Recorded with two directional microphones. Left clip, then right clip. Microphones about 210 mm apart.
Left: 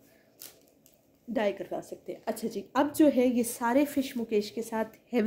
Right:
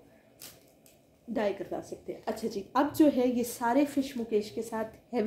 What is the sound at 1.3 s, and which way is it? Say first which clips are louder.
A woman's voice: left 1 dB; 40° left (ahead or behind).